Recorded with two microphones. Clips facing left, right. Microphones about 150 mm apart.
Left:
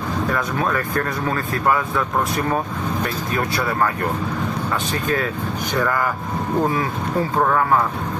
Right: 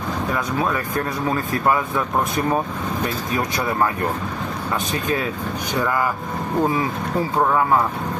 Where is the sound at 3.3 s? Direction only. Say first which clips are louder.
Even; 15° right (ahead or behind).